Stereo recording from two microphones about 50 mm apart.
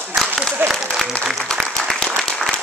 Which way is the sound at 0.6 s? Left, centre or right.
Right.